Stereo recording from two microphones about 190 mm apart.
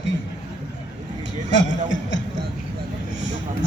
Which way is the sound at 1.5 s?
75° left (ahead or behind).